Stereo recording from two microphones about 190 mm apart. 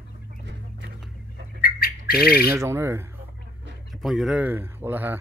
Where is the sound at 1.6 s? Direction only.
50° left (ahead or behind).